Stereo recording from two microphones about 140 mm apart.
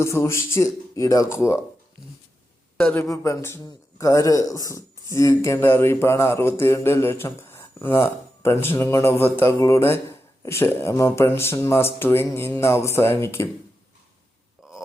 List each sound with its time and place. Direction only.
0.0 s speech: 20° left (ahead or behind)
2.7 s a man's voice: 15° left (ahead or behind)